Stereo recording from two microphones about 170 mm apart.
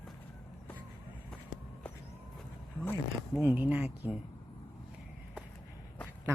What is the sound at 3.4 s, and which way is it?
Speech, 10° right (ahead or behind).